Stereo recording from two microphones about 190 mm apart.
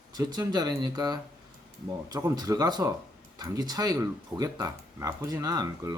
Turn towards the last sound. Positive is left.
turn(degrees=-20)  # may be behind; listen again after turning